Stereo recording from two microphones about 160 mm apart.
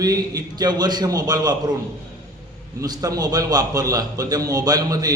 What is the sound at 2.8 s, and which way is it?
A man's voice, 25° right (ahead or behind).